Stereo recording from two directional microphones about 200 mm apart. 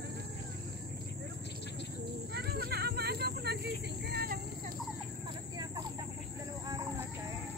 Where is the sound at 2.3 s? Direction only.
50° right (ahead or behind).